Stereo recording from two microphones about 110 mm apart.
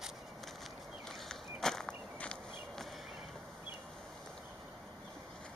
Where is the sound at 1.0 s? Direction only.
5° left (ahead or behind).